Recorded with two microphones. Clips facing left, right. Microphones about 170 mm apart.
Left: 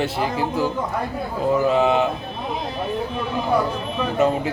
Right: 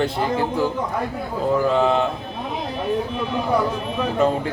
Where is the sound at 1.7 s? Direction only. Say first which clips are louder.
Even; 5° left (ahead or behind).